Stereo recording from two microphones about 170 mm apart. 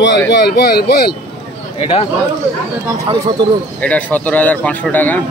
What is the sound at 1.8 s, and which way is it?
Speech, 35° left (ahead or behind).